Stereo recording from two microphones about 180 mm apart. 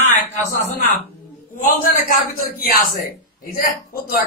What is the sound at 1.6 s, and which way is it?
A man's voice, 50° left (ahead or behind).